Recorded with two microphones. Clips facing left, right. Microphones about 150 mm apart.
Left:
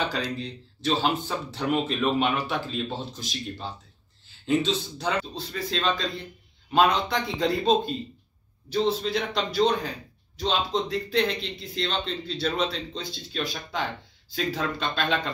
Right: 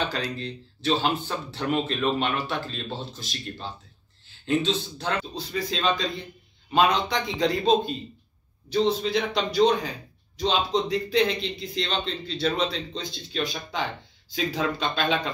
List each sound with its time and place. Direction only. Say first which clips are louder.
0.1 s a man's voice: even; centre (ahead or behind)